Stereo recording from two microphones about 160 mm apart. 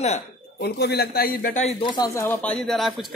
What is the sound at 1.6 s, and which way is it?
A man's voice, 30° left (ahead or behind).